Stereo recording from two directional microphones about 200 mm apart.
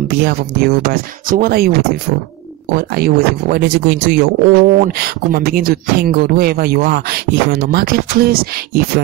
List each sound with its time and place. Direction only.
0.2 s speech: 50° right (ahead or behind)